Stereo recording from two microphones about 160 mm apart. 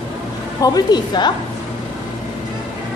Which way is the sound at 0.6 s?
25° left (ahead or behind).